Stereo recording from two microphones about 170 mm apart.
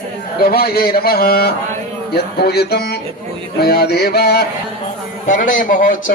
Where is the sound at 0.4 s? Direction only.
65° left (ahead or behind).